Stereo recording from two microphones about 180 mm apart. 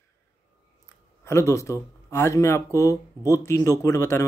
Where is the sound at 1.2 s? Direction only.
15° left (ahead or behind).